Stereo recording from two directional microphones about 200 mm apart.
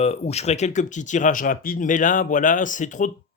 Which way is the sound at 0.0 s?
30° left (ahead or behind).